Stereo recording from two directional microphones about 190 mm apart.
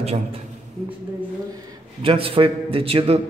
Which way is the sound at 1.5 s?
25° right (ahead or behind).